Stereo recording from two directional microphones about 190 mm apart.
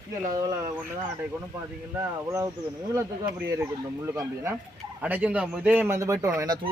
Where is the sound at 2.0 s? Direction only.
15° right (ahead or behind).